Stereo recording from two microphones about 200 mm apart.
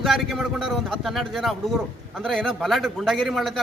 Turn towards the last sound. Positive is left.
turn(degrees=0)  # may be behind; listen again after turning